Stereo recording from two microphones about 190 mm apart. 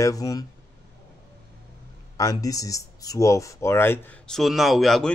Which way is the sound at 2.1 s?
20° left (ahead or behind).